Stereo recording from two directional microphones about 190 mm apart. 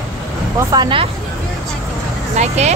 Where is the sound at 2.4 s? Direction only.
35° right (ahead or behind).